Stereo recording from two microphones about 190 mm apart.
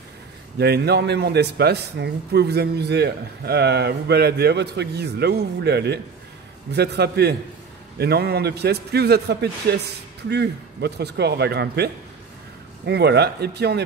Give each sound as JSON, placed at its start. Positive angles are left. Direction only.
{"t": 0.6, "sound": "speech", "side_deg": -60}